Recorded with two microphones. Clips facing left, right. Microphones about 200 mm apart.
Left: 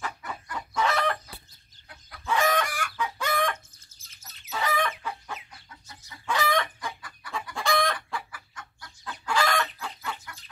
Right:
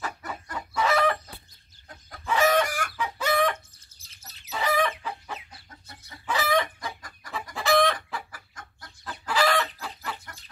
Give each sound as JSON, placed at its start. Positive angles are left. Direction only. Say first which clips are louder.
{"t": 0.7, "sound": "chicken", "louder": "right 3 dB", "side_deg": -5}
{"t": 1.9, "sound": "chicken", "louder": "right 3 dB", "side_deg": -45}
{"t": 2.2, "sound": "chicken", "louder": "right 3 dB", "side_deg": -5}
{"t": 2.7, "sound": "chicken", "louder": "right 2 dB", "side_deg": -40}
{"t": 3.0, "sound": "chicken", "louder": "right 3 dB", "side_deg": -5}
{"t": 6.8, "sound": "chicken", "louder": "even", "side_deg": -40}
{"t": 7.5, "sound": "chicken", "louder": "right 5 dB", "side_deg": 0}
{"t": 8.3, "sound": "chicken", "louder": "left 1 dB", "side_deg": -40}
{"t": 9.3, "sound": "chicken", "louder": "right 2 dB", "side_deg": -5}
{"t": 10.3, "sound": "chicken", "louder": "left 1 dB", "side_deg": -40}